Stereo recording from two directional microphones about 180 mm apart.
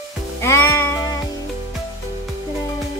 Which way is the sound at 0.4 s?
15° left (ahead or behind).